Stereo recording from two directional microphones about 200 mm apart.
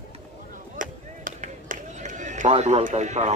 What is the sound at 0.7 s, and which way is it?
Speech, 40° right (ahead or behind).